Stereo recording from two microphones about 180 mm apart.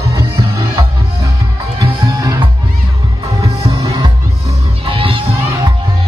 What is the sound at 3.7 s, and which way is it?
Music, 20° right (ahead or behind).